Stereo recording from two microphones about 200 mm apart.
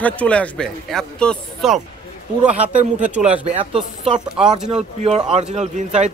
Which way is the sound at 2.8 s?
35° right (ahead or behind).